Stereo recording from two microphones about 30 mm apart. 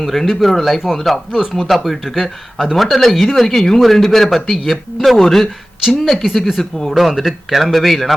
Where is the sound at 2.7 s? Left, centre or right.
Centre.